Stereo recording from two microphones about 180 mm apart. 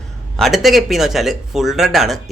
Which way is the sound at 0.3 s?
Centre (ahead or behind).